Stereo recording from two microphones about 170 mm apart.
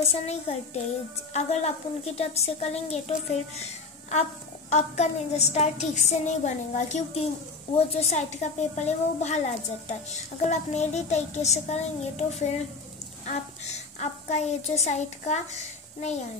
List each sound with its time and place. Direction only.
0.0 s a woman's voice: 40° left (ahead or behind)